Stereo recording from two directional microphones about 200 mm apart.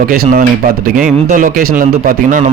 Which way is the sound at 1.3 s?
40° right (ahead or behind).